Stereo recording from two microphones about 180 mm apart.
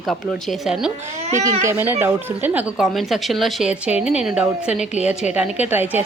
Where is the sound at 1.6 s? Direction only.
15° right (ahead or behind).